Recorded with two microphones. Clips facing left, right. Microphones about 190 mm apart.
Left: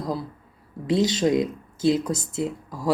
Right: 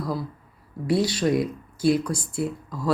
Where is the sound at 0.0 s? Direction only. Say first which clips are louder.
Even; 20° left (ahead or behind).